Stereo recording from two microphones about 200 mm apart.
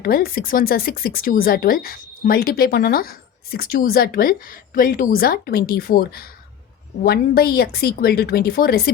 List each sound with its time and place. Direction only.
0.0 s speech: 50° left (ahead or behind)